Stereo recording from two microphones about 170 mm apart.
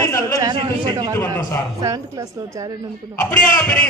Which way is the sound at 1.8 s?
20° right (ahead or behind).